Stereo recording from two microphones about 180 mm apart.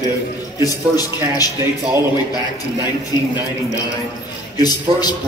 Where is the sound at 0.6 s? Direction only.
20° left (ahead or behind).